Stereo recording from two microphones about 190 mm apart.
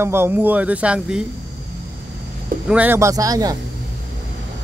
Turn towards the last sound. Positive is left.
turn(degrees=-20)  # may be behind; listen again after turning